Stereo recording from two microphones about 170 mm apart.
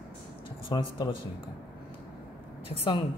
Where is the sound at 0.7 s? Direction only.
30° left (ahead or behind).